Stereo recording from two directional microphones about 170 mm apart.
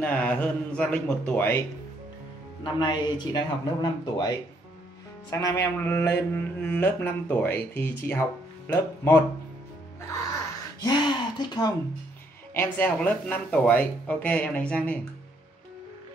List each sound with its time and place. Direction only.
0.0 s speech: 5° left (ahead or behind)
2.6 s speech: 25° left (ahead or behind)
10.8 s speech: 25° left (ahead or behind)
12.5 s speech: 10° left (ahead or behind)